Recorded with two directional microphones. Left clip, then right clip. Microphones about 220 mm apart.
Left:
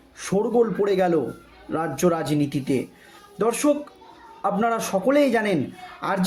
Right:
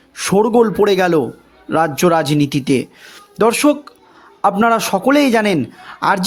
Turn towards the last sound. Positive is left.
turn(degrees=-45)  # may be behind; listen again after turning